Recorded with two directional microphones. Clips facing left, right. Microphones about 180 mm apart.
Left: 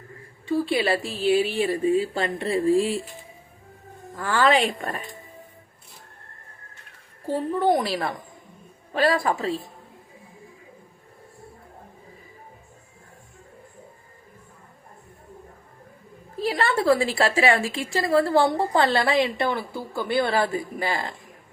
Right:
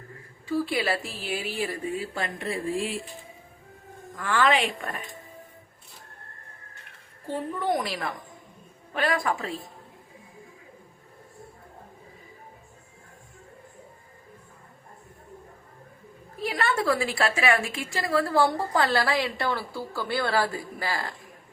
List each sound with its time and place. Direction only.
0.4 s a woman's voice: 25° left (ahead or behind)
4.2 s a woman's voice: 35° left (ahead or behind)
7.3 s a woman's voice: 30° left (ahead or behind)
16.4 s a woman's voice: 30° left (ahead or behind)